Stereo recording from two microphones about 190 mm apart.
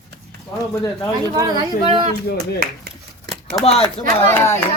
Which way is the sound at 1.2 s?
20° right (ahead or behind).